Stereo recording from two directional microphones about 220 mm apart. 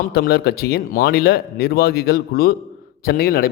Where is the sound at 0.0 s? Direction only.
45° left (ahead or behind).